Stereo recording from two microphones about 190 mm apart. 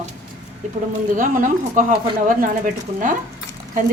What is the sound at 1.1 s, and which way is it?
A woman's voice, 45° right (ahead or behind).